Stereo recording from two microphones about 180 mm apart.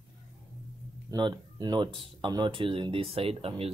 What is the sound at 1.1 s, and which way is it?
Speech, 25° right (ahead or behind).